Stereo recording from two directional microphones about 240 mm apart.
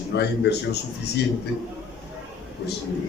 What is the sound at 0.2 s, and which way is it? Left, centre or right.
Speech, left.